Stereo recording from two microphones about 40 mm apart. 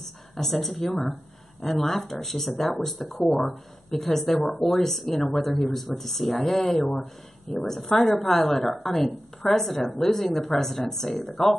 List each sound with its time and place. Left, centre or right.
0.0 s a woman's voice: centre